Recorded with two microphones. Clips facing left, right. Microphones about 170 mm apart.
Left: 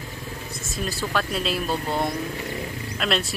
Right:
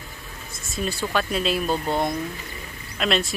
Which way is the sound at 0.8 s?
Centre (ahead or behind).